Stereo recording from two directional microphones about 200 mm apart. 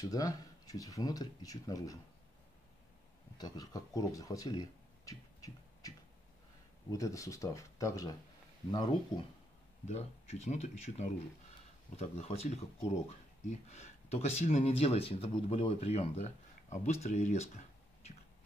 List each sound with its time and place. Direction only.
0.0 s speech: 20° left (ahead or behind)
3.3 s speech: 20° left (ahead or behind)
9.8 s speech: 35° left (ahead or behind)